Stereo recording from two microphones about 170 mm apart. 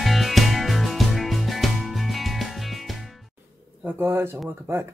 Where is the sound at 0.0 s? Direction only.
Centre (ahead or behind).